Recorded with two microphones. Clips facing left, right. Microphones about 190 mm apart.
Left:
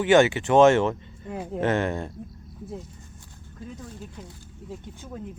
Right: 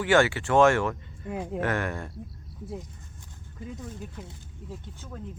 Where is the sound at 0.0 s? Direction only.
20° left (ahead or behind).